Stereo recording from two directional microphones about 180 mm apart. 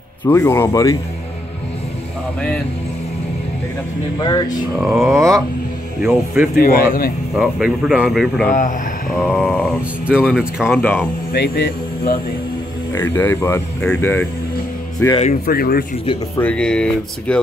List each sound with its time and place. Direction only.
0.2 s speech: 15° left (ahead or behind)
4.7 s speech: centre (ahead or behind)
5.0 s speech: 15° right (ahead or behind)
6.5 s a man's voice: 55° left (ahead or behind)
7.3 s speech: 5° right (ahead or behind)
8.5 s speech: 45° left (ahead or behind)
9.2 s speech: centre (ahead or behind)
10.8 s speech: 10° left (ahead or behind)
11.3 s a man's voice: 65° left (ahead or behind)
12.9 s speech: 15° left (ahead or behind)
15.4 s a man's voice: 55° left (ahead or behind)
16.3 s speech: 5° left (ahead or behind)